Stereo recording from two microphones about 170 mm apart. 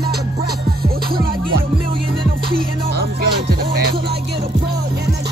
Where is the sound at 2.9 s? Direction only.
70° right (ahead or behind).